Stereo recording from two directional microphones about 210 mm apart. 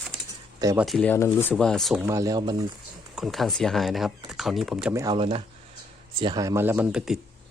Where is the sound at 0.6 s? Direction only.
15° right (ahead or behind).